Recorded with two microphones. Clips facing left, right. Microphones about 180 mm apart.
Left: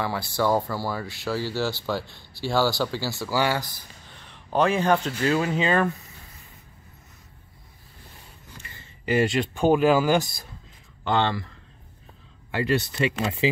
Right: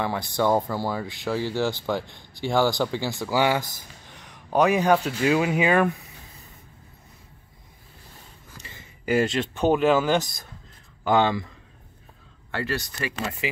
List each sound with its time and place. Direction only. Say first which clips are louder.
0.0 s speech: right 1 dB; 20° right (ahead or behind)
9.0 s speech: even; centre (ahead or behind)
11.1 s speech: right 3 dB; 10° right (ahead or behind)
12.4 s speech: left 5 dB; 15° left (ahead or behind)